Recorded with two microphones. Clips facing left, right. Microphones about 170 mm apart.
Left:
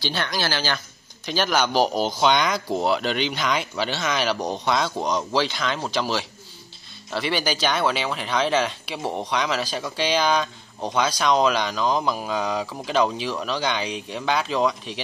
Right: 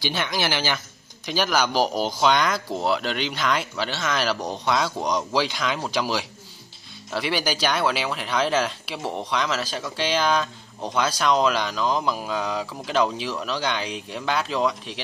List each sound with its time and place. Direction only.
0.1 s speech: 15° right (ahead or behind)
4.9 s speech: 5° left (ahead or behind)
5.3 s speech: 5° right (ahead or behind)